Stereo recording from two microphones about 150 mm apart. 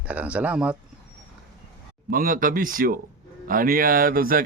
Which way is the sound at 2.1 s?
70° right (ahead or behind).